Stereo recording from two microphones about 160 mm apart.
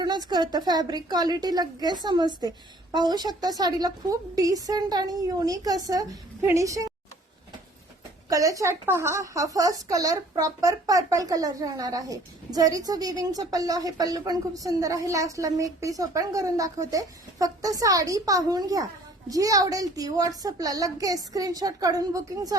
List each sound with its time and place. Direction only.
0.0 s a woman's voice: 25° right (ahead or behind)
8.3 s a woman's voice: 20° right (ahead or behind)